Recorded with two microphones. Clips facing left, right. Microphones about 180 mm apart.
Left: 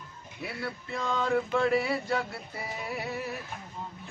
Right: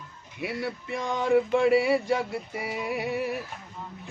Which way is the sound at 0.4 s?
15° right (ahead or behind).